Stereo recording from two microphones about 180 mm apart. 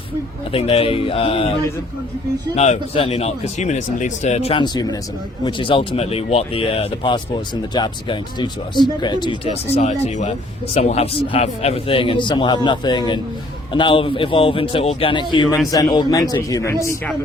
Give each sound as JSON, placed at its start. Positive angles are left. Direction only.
{"t": 0.5, "sound": "speech", "side_deg": 30}
{"t": 2.6, "sound": "speech", "side_deg": 35}